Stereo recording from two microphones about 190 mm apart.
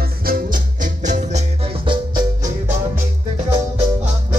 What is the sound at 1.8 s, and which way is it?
Music, 25° right (ahead or behind).